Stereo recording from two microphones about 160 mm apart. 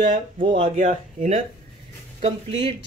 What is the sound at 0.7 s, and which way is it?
Speech, 55° right (ahead or behind).